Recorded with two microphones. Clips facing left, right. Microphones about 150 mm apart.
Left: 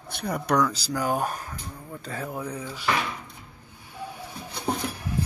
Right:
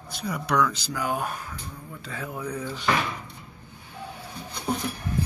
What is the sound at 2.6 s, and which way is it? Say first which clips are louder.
Speech: right 3 dB; 10° left (ahead or behind).